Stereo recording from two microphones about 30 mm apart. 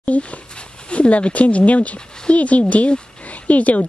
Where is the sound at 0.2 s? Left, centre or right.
Left.